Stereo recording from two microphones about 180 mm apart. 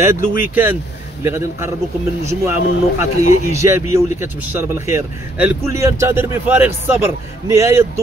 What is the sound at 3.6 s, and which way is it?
A man's voice, 15° right (ahead or behind).